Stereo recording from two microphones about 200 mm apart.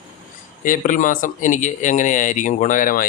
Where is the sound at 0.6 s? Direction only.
40° left (ahead or behind).